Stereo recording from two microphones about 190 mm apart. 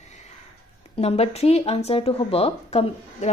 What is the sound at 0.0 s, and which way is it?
Sniff, 40° left (ahead or behind).